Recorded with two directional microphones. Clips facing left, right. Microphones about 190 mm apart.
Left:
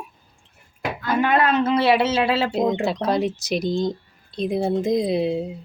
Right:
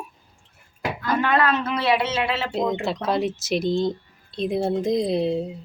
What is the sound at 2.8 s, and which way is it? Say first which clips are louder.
Speech: left 2 dB; centre (ahead or behind).